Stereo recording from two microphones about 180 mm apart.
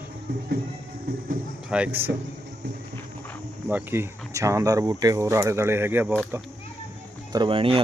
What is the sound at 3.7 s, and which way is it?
Speech, 10° right (ahead or behind).